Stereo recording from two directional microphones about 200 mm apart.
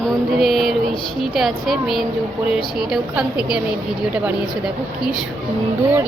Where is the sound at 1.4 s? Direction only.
Centre (ahead or behind).